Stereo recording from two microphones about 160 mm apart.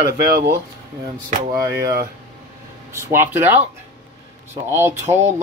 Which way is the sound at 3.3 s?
15° right (ahead or behind).